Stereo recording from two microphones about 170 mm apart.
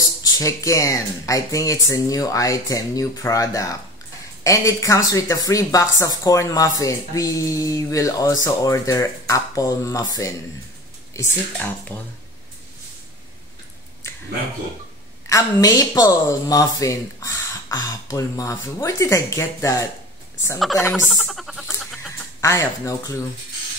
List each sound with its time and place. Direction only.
0.0 s speech: 20° left (ahead or behind)
15.2 s a woman's voice: 20° left (ahead or behind)
20.5 s a woman's voice: centre (ahead or behind)
20.9 s a sound: 5° right (ahead or behind)
22.4 s speech: 20° left (ahead or behind)